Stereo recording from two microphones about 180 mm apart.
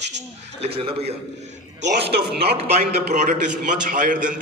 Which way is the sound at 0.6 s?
30° right (ahead or behind).